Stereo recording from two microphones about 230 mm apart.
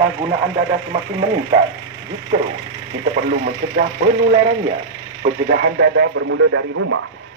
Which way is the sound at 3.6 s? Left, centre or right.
Right.